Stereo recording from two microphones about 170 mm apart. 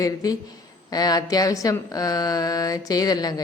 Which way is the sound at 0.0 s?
20° left (ahead or behind).